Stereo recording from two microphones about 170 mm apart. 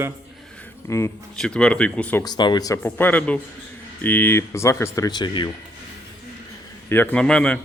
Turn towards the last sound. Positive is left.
turn(degrees=5)  # may be behind; listen again after turning